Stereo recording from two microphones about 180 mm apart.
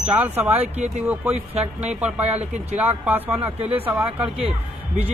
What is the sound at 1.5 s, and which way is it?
Speech, 35° right (ahead or behind).